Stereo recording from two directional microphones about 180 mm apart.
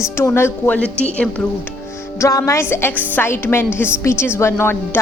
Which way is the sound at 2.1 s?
15° left (ahead or behind).